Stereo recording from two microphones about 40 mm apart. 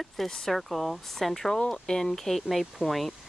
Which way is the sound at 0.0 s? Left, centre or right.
Centre.